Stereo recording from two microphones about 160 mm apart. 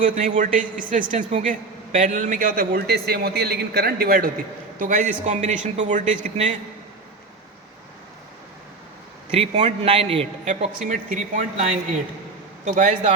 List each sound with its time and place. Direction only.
0.0 s a man's voice: 55° right (ahead or behind)
4.8 s speech: 50° right (ahead or behind)
9.3 s a man's voice: 40° right (ahead or behind)
10.4 s a man's voice: 50° right (ahead or behind)
12.6 s speech: 55° right (ahead or behind)